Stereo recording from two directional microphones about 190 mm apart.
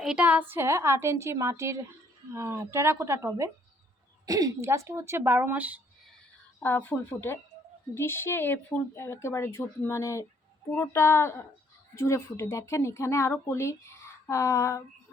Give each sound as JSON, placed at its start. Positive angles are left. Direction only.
{"t": 0.0, "sound": "a woman's voice", "side_deg": -5}
{"t": 6.6, "sound": "speech", "side_deg": 10}